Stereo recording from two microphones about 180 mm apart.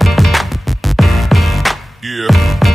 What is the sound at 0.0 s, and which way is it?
Music, centre (ahead or behind).